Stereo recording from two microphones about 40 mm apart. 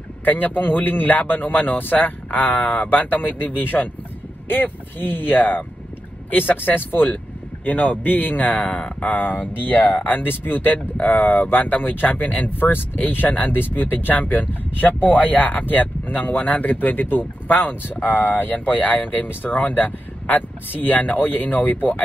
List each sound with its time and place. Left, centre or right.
0.2 s speech: left
8.5 s speech: left
9.0 s speech: left